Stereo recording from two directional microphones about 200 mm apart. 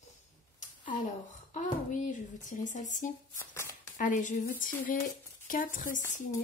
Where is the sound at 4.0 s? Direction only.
40° left (ahead or behind).